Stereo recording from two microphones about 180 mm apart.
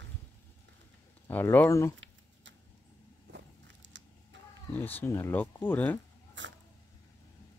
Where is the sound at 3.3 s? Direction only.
85° right.